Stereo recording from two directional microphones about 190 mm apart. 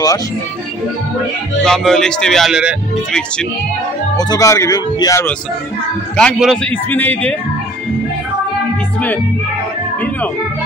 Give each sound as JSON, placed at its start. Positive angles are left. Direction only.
{"t": 1.6, "sound": "speech", "side_deg": 0}
{"t": 4.2, "sound": "a man's voice", "side_deg": 20}
{"t": 6.1, "sound": "a man's voice", "side_deg": 5}